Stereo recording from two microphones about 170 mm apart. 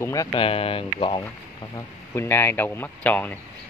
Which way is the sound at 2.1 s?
15° left (ahead or behind).